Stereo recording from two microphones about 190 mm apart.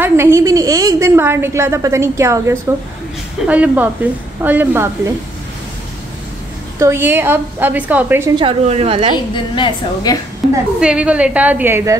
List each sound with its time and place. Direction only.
0.0 s a woman's voice: 15° right (ahead or behind)
6.8 s a woman's voice: 10° right (ahead or behind)
8.4 s a woman's voice: 30° right (ahead or behind)
9.1 s a woman's voice: 25° left (ahead or behind)
10.8 s a woman's voice: 5° right (ahead or behind)